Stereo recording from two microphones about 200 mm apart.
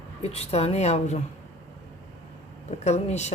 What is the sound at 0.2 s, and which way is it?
A woman's voice, 30° left (ahead or behind).